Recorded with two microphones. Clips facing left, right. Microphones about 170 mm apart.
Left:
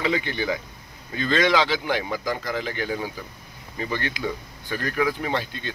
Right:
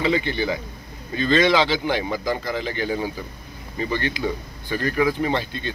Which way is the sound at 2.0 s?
10° right (ahead or behind).